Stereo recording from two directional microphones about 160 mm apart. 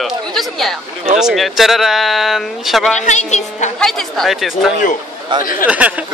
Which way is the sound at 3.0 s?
45° left (ahead or behind).